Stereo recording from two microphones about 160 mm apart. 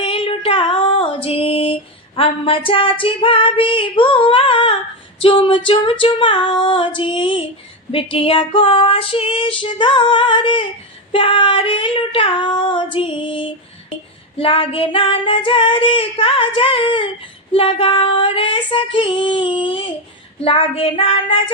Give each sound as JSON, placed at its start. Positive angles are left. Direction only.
{"t": 0.0, "sound": "female singing", "side_deg": 35}